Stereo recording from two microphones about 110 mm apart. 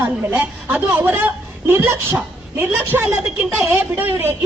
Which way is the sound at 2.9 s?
15° right (ahead or behind).